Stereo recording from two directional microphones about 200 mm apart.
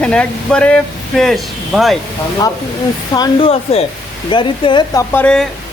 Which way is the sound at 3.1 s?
25° left (ahead or behind).